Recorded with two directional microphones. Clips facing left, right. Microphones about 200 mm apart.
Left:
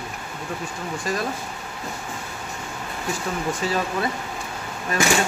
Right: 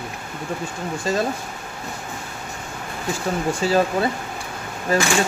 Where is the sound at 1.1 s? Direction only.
25° right (ahead or behind).